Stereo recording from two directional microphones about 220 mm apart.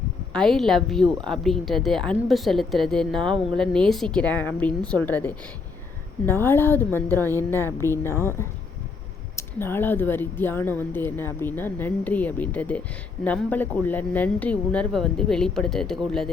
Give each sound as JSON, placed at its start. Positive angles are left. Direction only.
{"t": 0.3, "sound": "speech", "side_deg": 0}
{"t": 3.2, "sound": "speech", "side_deg": -25}
{"t": 3.5, "sound": "speech", "side_deg": 5}